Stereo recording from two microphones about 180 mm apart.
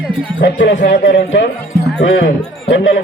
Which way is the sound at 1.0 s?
85° left.